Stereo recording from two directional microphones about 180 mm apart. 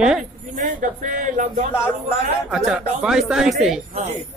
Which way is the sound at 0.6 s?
45° right (ahead or behind).